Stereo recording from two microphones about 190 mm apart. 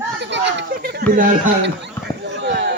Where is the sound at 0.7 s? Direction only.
55° right (ahead or behind).